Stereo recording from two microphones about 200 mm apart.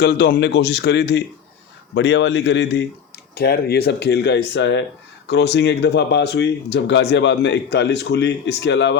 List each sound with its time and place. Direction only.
0.0 s speech: 50° left (ahead or behind)